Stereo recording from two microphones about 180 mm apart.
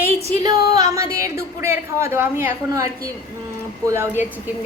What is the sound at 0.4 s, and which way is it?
A woman's voice, 20° right (ahead or behind).